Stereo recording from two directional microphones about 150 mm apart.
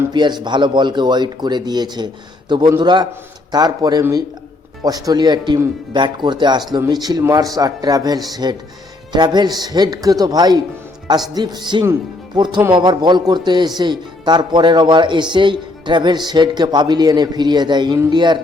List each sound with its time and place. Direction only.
0.1 s a man's voice: 30° right (ahead or behind)